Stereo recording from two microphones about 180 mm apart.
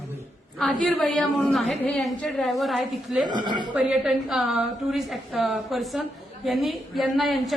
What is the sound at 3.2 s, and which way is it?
Speech, 25° right (ahead or behind).